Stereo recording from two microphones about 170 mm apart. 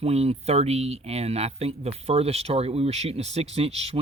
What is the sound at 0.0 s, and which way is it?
Speech, 35° right (ahead or behind).